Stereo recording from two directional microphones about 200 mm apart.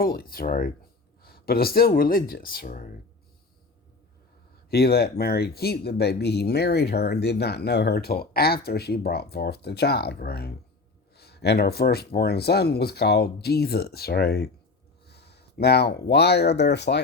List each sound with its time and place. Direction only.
0.0 s speech: 45° left (ahead or behind)
4.7 s speech: 50° left (ahead or behind)